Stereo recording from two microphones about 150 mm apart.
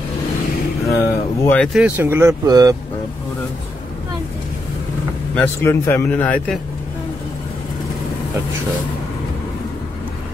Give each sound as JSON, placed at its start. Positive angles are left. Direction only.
{"t": 0.8, "sound": "speech", "side_deg": 15}
{"t": 1.7, "sound": "speech", "side_deg": -5}
{"t": 5.3, "sound": "speech", "side_deg": 15}